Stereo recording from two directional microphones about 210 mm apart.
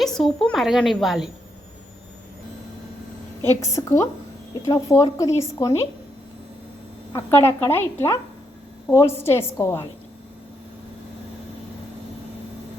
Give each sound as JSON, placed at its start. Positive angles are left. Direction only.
{"t": 0.0, "sound": "a woman's voice", "side_deg": 0}
{"t": 3.4, "sound": "speech", "side_deg": 15}
{"t": 7.1, "sound": "speech", "side_deg": 15}